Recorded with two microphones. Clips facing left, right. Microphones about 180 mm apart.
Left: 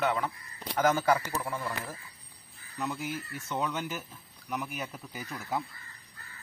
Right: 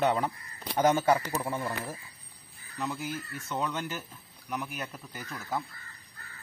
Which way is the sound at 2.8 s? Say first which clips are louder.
Even; centre (ahead or behind).